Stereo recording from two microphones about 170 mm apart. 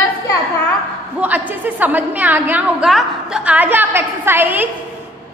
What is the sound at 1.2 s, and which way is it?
A woman's voice, 10° right (ahead or behind).